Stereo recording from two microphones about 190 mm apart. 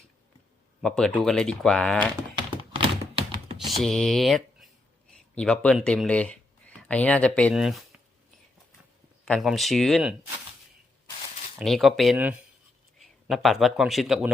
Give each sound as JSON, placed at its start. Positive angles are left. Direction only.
{"t": 0.8, "sound": "speech", "side_deg": 5}
{"t": 2.7, "sound": "a sound", "side_deg": -30}
{"t": 3.7, "sound": "speech", "side_deg": 0}
{"t": 9.2, "sound": "speech", "side_deg": 0}
{"t": 11.6, "sound": "speech", "side_deg": 0}